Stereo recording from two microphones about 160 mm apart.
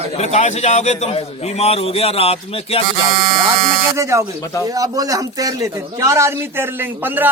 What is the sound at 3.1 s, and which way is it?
Speech, 60° right (ahead or behind).